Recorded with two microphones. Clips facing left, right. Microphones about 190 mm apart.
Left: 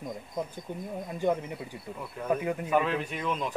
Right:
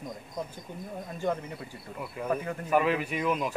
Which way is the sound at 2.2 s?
5° right (ahead or behind).